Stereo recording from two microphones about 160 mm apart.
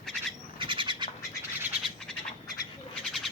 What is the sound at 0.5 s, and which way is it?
Bird, 30° right (ahead or behind).